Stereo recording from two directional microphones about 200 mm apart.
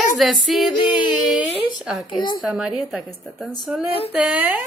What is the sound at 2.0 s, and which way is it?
Speech, 20° left (ahead or behind).